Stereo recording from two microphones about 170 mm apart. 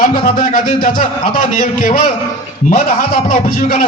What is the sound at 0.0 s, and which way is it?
A man's voice, 55° left (ahead or behind).